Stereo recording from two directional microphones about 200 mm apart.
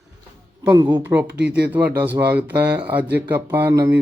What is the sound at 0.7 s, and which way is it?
Speech, 20° right (ahead or behind).